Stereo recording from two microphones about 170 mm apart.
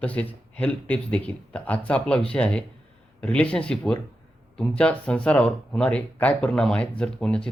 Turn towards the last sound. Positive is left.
turn(degrees=5)  # may be behind; listen again after turning